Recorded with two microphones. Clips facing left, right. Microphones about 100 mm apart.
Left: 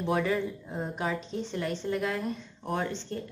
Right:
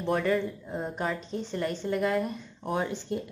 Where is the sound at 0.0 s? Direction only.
Centre (ahead or behind).